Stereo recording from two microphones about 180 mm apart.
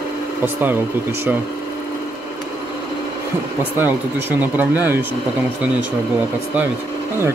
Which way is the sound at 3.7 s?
10° right (ahead or behind).